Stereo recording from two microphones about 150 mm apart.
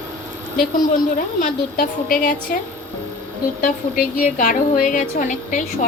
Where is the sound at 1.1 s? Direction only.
70° left (ahead or behind).